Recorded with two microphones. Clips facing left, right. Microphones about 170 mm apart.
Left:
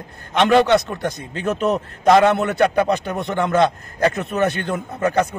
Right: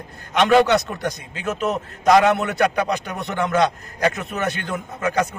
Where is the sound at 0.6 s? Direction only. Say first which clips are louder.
Left 2 dB; 30° left (ahead or behind).